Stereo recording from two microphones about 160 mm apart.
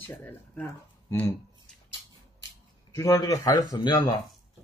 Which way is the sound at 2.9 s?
20° left (ahead or behind).